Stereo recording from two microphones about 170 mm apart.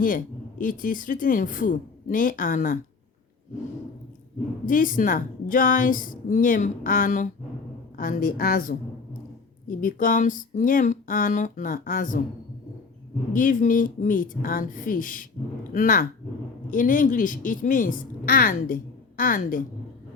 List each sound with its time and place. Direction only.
0.6 s speech: 50° left (ahead or behind)
4.6 s a woman's voice: 50° left (ahead or behind)
13.3 s speech: 55° left (ahead or behind)